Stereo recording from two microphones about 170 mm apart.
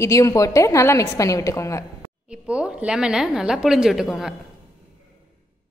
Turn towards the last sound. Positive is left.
turn(degrees=0)  # may be behind; listen again after turning